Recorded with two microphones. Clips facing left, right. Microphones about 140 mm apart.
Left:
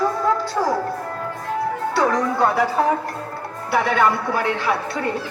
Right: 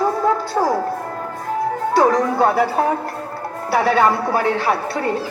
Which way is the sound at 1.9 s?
45° right (ahead or behind).